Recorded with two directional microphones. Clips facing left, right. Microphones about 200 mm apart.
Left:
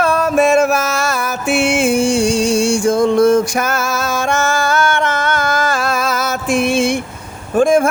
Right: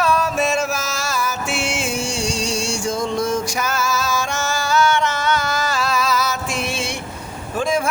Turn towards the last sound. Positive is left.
turn(degrees=50)  # may be behind; listen again after turning